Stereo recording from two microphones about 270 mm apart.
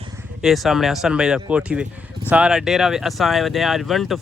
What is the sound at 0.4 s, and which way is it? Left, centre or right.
Speech, centre.